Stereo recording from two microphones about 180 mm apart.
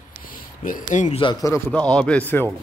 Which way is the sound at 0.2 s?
50° left (ahead or behind).